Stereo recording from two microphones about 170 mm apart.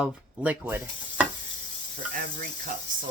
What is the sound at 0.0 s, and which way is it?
Speech, 10° right (ahead or behind).